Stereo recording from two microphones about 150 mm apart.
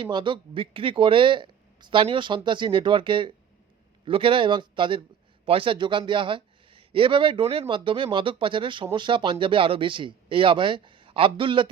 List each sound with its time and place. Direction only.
0.0 s a man's voice: 30° right (ahead or behind)